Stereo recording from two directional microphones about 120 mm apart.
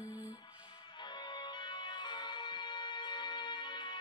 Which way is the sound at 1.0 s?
40° left (ahead or behind).